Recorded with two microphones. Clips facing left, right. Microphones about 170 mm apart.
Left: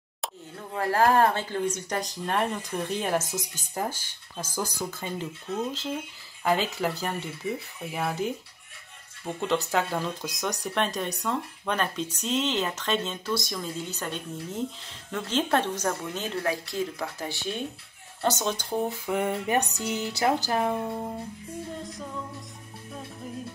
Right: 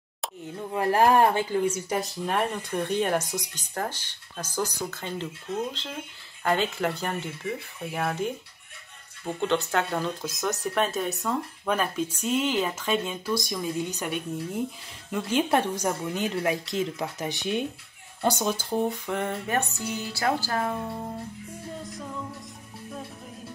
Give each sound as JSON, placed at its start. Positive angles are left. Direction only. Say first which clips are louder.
{"t": 0.6, "sound": "speech", "louder": "right 2 dB", "side_deg": -15}